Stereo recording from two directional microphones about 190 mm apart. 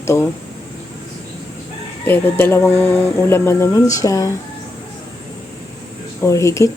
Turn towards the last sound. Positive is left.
turn(degrees=15)  # may be behind; listen again after turning